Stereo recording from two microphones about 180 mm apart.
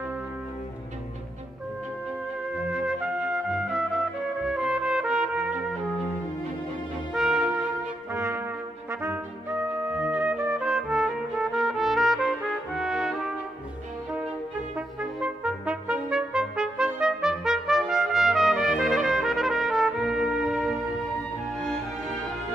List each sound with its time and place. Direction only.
2.5 s trumpet: 5° right (ahead or behind)
7.2 s music: centre (ahead or behind)
8.1 s brass instrument: 15° right (ahead or behind)
9.0 s music: 10° right (ahead or behind)
15.1 s trumpet: 5° right (ahead or behind)